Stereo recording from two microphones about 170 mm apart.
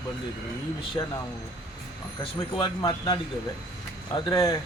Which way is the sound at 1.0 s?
20° left (ahead or behind).